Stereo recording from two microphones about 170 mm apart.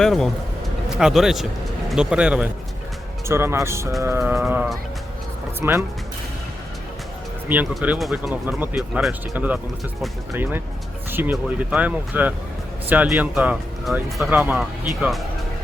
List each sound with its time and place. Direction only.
0.0 s speech: centre (ahead or behind); by 5.8 s 15° right (ahead or behind)
7.4 s speech: 10° right (ahead or behind)